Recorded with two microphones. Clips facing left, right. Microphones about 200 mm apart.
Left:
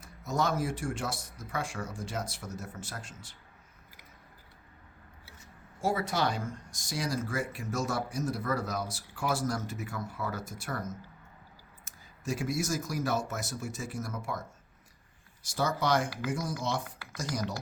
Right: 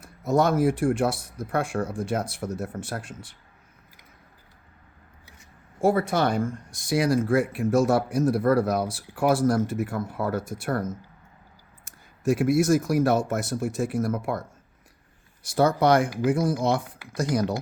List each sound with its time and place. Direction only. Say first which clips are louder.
0.0 s speech: right 9 dB; 55° right (ahead or behind)
5.8 s speech: right 8 dB; 55° right (ahead or behind)
15.5 s speech: right 9 dB; 60° right (ahead or behind)